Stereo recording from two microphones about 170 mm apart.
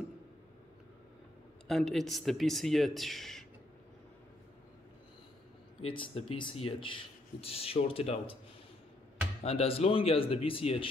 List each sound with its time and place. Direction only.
1.7 s a man's voice: centre (ahead or behind)
5.8 s speech: 35° left (ahead or behind)
9.4 s speech: 35° left (ahead or behind)